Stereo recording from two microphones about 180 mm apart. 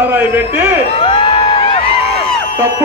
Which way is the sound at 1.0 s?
30° left (ahead or behind).